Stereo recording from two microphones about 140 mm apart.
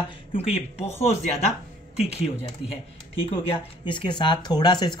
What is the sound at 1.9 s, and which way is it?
Speech, 45° left (ahead or behind).